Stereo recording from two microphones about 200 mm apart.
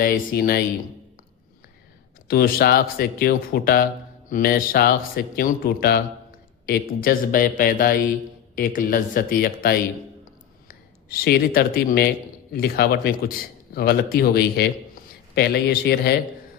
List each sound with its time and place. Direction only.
0.0 s speech: 45° left (ahead or behind)
2.2 s a man's voice: 50° left (ahead or behind)